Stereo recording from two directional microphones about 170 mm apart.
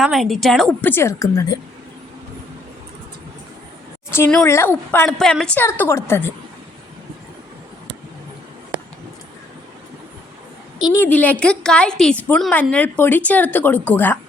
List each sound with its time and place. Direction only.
0.0 s a woman's voice: centre (ahead or behind)
0.9 s a woman's voice: 15° left (ahead or behind)
4.1 s a woman's voice: 15° left (ahead or behind)
10.8 s a woman's voice: 25° left (ahead or behind)
11.0 s a woman's voice: 10° left (ahead or behind)